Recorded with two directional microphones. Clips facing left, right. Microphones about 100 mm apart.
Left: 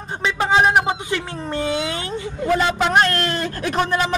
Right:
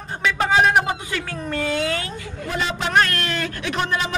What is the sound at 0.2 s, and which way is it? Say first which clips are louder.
Speech: left 1 dB; 20° left (ahead or behind).